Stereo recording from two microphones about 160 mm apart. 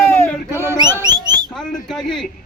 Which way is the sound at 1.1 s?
25° right (ahead or behind).